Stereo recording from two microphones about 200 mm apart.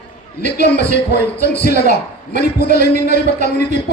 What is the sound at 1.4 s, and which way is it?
A man's voice, 55° left (ahead or behind).